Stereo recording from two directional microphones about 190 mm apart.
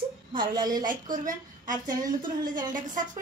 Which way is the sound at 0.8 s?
45° right (ahead or behind).